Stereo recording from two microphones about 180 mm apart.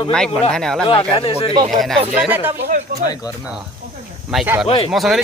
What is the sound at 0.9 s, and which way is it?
Speech, 30° left (ahead or behind).